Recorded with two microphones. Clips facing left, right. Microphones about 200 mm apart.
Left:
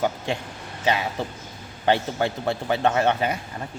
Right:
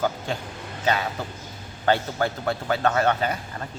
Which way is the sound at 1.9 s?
20° left (ahead or behind).